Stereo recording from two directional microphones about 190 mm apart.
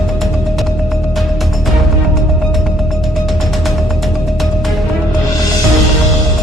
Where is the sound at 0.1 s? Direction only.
Centre (ahead or behind).